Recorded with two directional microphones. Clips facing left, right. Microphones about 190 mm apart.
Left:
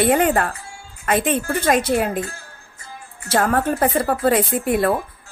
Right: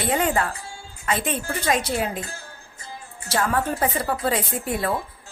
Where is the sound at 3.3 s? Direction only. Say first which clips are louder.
Left 5 dB; 55° left (ahead or behind).